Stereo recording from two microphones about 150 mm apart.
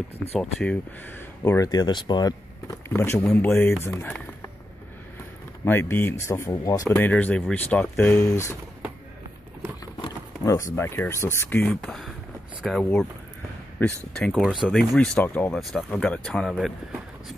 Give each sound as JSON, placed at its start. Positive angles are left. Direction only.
{"t": 0.4, "sound": "speech", "side_deg": 5}
{"t": 1.4, "sound": "speech", "side_deg": 20}
{"t": 2.9, "sound": "speech", "side_deg": 15}
{"t": 4.0, "sound": "a sound", "side_deg": 15}
{"t": 5.7, "sound": "speech", "side_deg": 15}
{"t": 7.0, "sound": "speech", "side_deg": 10}
{"t": 10.4, "sound": "speech", "side_deg": 20}
{"t": 11.7, "sound": "speech", "side_deg": 0}
{"t": 13.8, "sound": "speech", "side_deg": 10}
{"t": 14.1, "sound": "speech", "side_deg": 0}